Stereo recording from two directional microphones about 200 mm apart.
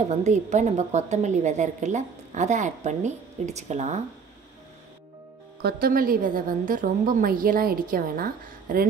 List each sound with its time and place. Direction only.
0.1 s a woman's voice: 35° right (ahead or behind)
5.6 s a woman's voice: 50° right (ahead or behind)